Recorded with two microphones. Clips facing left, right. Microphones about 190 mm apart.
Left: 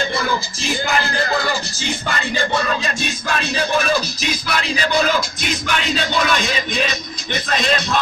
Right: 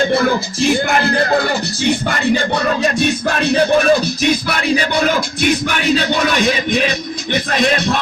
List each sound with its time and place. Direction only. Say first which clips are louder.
0.1 s music: right 7 dB; 55° right (ahead or behind)